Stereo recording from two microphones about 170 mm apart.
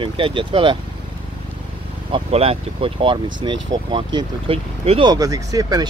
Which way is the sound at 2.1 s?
35° right (ahead or behind).